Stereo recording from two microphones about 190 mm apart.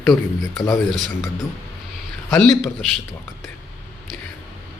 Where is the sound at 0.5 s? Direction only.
15° left (ahead or behind).